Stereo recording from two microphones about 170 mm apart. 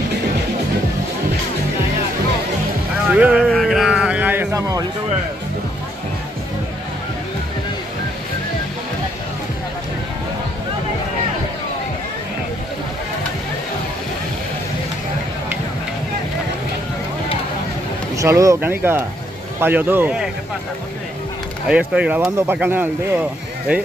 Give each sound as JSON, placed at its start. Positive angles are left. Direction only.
{"t": 3.1, "sound": "speech", "side_deg": -5}
{"t": 3.4, "sound": "a sound", "side_deg": 5}
{"t": 18.1, "sound": "speech", "side_deg": -20}
{"t": 21.6, "sound": "speech", "side_deg": -5}